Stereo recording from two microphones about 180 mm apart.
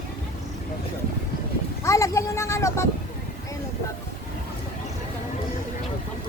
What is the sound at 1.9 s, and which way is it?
Speech, 15° left (ahead or behind).